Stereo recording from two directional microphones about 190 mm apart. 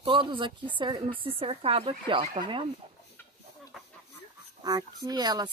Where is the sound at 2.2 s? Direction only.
40° right (ahead or behind).